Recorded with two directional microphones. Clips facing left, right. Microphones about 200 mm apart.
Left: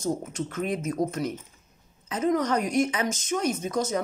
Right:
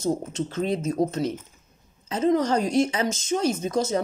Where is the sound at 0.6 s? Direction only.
25° right (ahead or behind).